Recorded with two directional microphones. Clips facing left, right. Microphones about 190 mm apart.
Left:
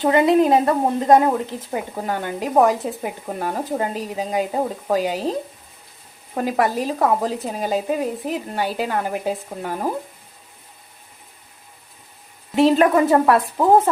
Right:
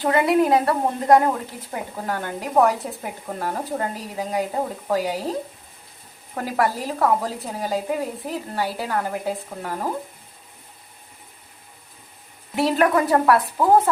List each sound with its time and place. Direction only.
0.0 s a woman's voice: 20° left (ahead or behind)
6.3 s a woman's voice: 20° left (ahead or behind)
12.5 s a woman's voice: 20° left (ahead or behind)